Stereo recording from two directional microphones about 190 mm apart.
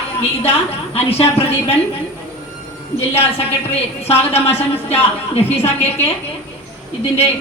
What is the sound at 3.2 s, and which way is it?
A woman's voice, 30° left (ahead or behind).